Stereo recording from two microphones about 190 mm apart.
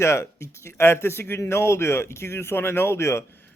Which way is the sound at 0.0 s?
15° left (ahead or behind).